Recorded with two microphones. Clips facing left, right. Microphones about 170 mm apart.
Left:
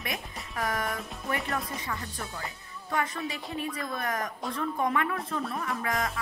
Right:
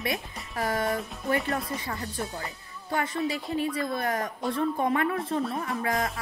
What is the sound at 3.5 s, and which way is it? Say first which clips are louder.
Speech: right 4 dB; 30° right (ahead or behind).